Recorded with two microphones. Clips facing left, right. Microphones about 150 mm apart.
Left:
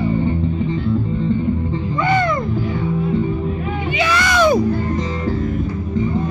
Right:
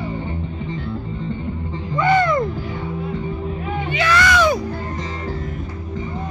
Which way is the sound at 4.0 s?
20° left (ahead or behind).